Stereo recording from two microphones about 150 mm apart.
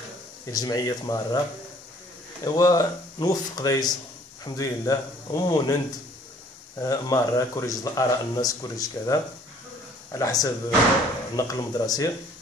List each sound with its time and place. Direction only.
0.5 s speech: 25° left (ahead or behind)
2.4 s speech: 25° left (ahead or behind)